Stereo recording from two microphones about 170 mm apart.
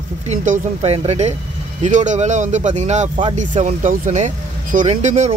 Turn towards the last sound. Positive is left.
turn(degrees=-45)  # may be behind; listen again after turning